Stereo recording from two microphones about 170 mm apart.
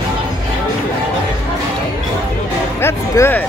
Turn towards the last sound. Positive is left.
turn(degrees=15)  # may be behind; listen again after turning